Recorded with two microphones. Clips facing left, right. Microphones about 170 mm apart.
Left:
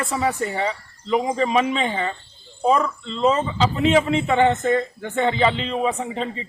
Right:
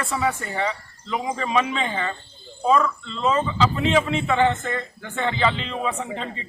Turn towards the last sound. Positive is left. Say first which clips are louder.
# left 3 dB
turn(degrees=25)  # may be behind; listen again after turning